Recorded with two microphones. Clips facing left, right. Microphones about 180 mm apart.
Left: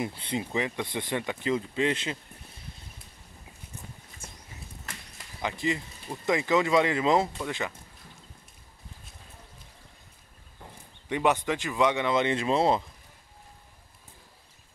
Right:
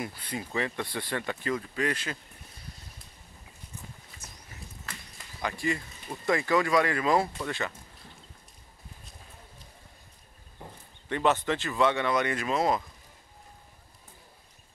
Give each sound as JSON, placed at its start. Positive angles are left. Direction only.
{"t": 0.0, "sound": "speech", "side_deg": 25}
{"t": 4.2, "sound": "horse", "side_deg": 25}
{"t": 5.4, "sound": "speech", "side_deg": 20}
{"t": 11.1, "sound": "speech", "side_deg": 15}